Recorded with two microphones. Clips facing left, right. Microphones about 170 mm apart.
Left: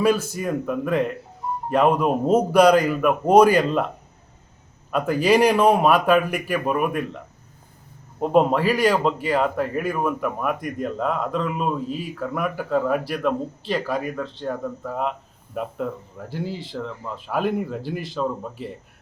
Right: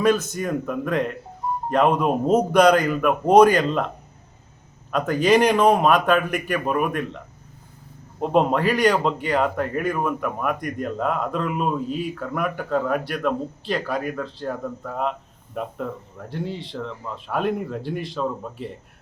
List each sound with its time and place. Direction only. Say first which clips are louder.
0.0 s a man's voice: even; 5° left (ahead or behind)
4.9 s a man's voice: even; 5° left (ahead or behind)
8.2 s a man's voice: left 1 dB; 5° left (ahead or behind)